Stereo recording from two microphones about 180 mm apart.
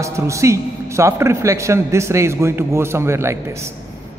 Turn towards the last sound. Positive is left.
turn(degrees=-15)  # may be behind; listen again after turning